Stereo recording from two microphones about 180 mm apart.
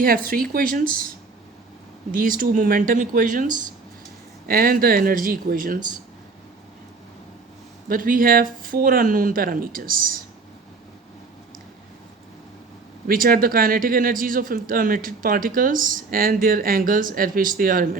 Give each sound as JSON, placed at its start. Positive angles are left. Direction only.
{"t": 0.0, "sound": "speech", "side_deg": -55}
{"t": 2.1, "sound": "speech", "side_deg": -50}
{"t": 7.9, "sound": "speech", "side_deg": -50}
{"t": 13.1, "sound": "speech", "side_deg": -55}